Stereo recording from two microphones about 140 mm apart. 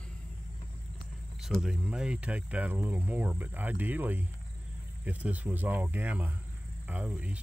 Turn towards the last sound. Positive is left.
turn(degrees=-10)  # may be behind; listen again after turning